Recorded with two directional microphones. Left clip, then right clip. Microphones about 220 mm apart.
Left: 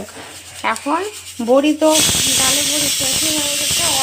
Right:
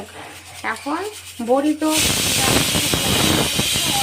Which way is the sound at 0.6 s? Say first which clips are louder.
Left 5 dB; 15° left (ahead or behind).